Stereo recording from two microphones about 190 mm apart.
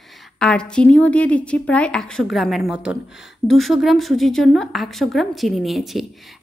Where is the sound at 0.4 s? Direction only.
5° left (ahead or behind).